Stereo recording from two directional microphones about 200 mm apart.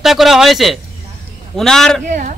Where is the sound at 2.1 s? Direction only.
40° right (ahead or behind).